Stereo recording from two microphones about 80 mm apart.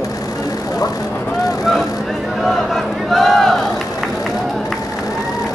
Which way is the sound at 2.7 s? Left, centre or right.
Centre.